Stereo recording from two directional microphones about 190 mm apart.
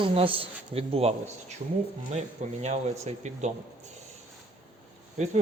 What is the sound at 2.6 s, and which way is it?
Speech, 35° right (ahead or behind).